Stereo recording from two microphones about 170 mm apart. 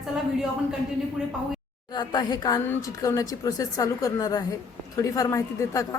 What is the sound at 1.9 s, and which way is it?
Speech, 25° left (ahead or behind).